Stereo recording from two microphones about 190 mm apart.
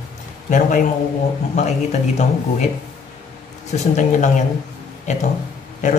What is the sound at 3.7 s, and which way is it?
Speech, 40° left (ahead or behind).